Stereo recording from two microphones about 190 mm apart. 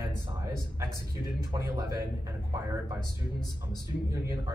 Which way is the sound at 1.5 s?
20° right (ahead or behind).